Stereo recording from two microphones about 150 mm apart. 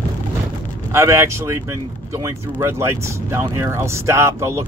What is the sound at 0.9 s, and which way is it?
Speech, 20° right (ahead or behind).